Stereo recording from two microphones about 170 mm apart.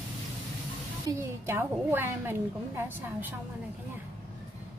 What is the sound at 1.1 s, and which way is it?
A woman's voice, 15° right (ahead or behind).